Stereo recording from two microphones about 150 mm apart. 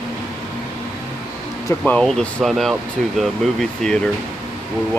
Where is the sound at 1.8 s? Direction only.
5° left (ahead or behind).